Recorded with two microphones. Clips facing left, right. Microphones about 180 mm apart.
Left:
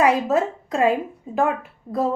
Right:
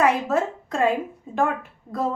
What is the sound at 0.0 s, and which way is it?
Speech, 15° left (ahead or behind).